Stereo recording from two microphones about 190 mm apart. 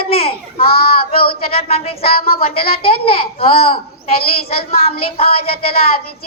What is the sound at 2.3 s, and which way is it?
Speech, 50° left (ahead or behind).